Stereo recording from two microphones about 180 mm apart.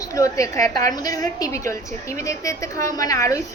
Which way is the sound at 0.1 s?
15° left (ahead or behind).